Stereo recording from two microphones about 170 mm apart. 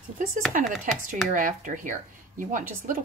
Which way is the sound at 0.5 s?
50° right (ahead or behind).